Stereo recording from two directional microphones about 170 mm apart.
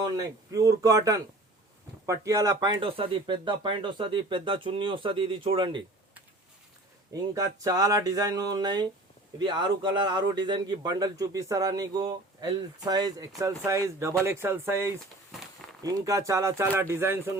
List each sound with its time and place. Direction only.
0.0 s a man's voice: 20° right (ahead or behind)
7.1 s a man's voice: 20° right (ahead or behind)